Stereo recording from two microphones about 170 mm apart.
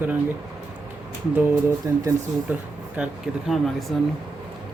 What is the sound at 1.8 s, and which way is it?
Speech, 20° right (ahead or behind).